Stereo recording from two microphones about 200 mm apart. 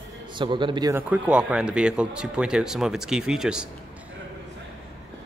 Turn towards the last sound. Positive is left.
turn(degrees=-5)  # may be behind; listen again after turning